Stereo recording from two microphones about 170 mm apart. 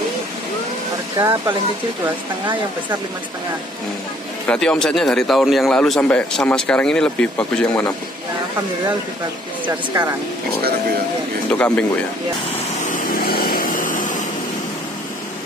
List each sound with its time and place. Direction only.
1.1 s speech: 20° right (ahead or behind)
4.5 s a man's voice: 5° left (ahead or behind)
9.7 s speech: 15° right (ahead or behind)
11.5 s speech: 10° left (ahead or behind)
12.8 s vehicle: 55° left (ahead or behind)